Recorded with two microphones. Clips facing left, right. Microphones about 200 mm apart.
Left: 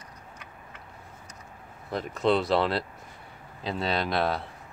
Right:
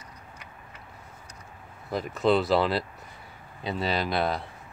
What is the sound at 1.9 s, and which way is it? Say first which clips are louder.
Speech: right 1 dB; centre (ahead or behind).